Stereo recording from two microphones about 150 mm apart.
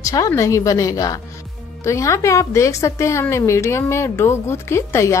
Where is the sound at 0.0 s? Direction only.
20° left (ahead or behind).